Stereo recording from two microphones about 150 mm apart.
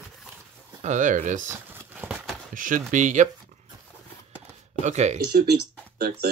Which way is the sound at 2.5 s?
60° right (ahead or behind).